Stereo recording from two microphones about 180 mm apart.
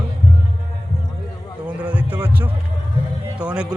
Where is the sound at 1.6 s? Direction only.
10° right (ahead or behind).